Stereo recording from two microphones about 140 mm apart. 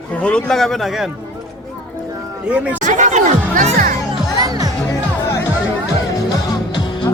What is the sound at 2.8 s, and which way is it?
Speech, 60° right (ahead or behind).